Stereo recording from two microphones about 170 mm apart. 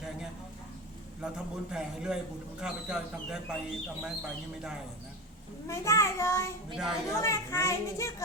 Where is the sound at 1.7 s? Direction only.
5° right (ahead or behind).